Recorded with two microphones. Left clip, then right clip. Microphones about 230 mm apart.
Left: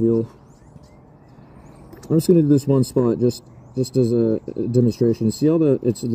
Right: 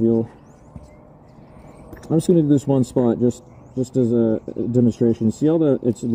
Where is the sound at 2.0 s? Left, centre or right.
Centre.